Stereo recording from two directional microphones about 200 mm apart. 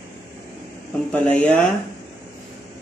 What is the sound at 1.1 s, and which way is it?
Speech, 10° left (ahead or behind).